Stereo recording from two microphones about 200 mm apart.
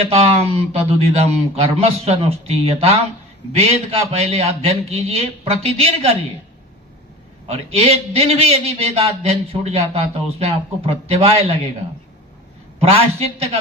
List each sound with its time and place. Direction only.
0.1 s a man's voice: 30° right (ahead or behind)
7.4 s a man's voice: 30° right (ahead or behind)
12.8 s a man's voice: 30° right (ahead or behind)